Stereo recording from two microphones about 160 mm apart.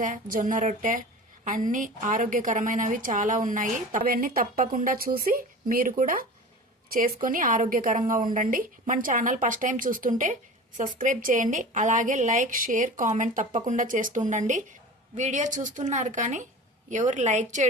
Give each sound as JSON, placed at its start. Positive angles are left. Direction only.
{"t": 0.0, "sound": "a woman's voice", "side_deg": -55}